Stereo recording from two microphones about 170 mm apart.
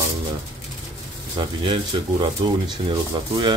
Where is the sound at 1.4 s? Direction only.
30° right (ahead or behind).